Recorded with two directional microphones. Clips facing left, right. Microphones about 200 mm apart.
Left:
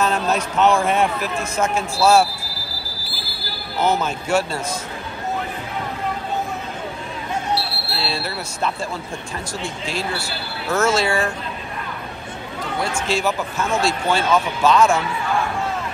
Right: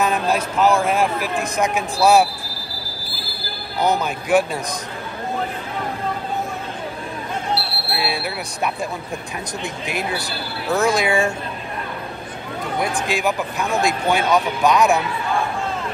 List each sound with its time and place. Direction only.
0.0 s speech: 10° right (ahead or behind)
3.8 s speech: 15° right (ahead or behind)
8.0 s speech: 15° right (ahead or behind)
13.0 s speech: 15° right (ahead or behind)